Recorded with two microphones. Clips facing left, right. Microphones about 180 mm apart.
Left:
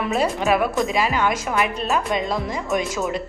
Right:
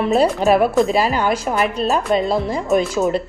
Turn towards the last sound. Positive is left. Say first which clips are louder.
# right 6 dB
turn(degrees=-30)  # may be behind; listen again after turning